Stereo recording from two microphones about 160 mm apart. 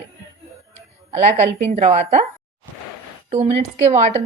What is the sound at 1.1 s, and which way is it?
A woman's voice, 45° right (ahead or behind).